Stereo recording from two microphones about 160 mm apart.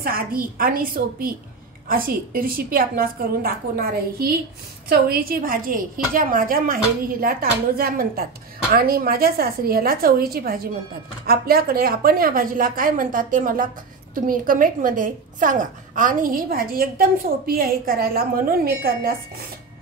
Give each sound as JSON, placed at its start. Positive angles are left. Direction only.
{"t": 0.0, "sound": "a woman's voice", "side_deg": -65}